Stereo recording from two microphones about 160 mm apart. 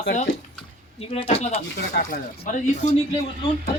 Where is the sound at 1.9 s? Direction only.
55° left (ahead or behind).